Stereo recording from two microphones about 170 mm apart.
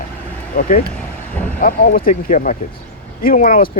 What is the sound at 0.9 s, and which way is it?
Vehicle, 10° left (ahead or behind).